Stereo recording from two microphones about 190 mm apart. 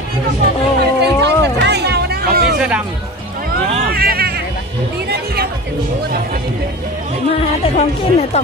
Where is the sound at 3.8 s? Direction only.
50° right (ahead or behind).